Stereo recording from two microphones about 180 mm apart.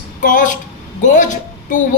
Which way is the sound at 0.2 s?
45° left (ahead or behind).